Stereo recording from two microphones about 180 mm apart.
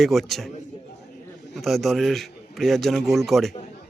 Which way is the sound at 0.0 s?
Centre (ahead or behind).